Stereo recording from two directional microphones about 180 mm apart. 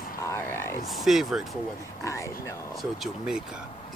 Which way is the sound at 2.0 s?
15° left (ahead or behind).